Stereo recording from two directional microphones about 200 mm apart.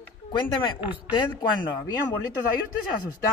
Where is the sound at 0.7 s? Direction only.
10° right (ahead or behind).